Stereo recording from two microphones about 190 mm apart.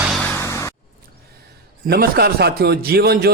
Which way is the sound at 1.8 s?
55° right (ahead or behind).